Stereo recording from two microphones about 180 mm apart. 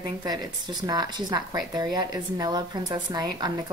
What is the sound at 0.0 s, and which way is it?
A woman's voice, 20° right (ahead or behind).